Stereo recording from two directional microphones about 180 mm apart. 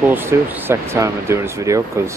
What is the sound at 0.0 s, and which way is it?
Speech, 10° right (ahead or behind).